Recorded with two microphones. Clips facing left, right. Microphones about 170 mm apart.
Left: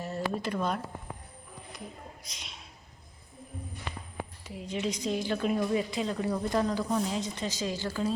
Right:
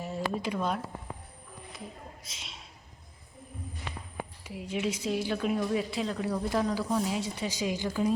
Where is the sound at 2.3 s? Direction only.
Centre (ahead or behind).